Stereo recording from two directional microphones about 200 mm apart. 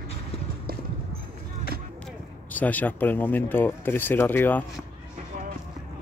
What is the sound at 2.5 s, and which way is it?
Speech, 10° left (ahead or behind).